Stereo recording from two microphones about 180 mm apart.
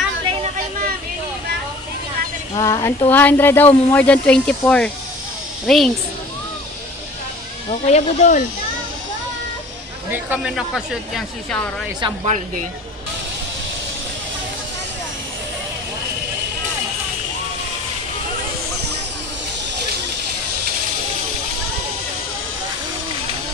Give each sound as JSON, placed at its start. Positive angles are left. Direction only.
{"t": 2.5, "sound": "a woman's voice", "side_deg": 20}
{"t": 7.8, "sound": "speech", "side_deg": 40}
{"t": 10.1, "sound": "speech", "side_deg": -5}